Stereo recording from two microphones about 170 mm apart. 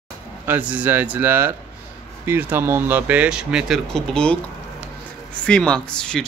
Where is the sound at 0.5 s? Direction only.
10° right (ahead or behind).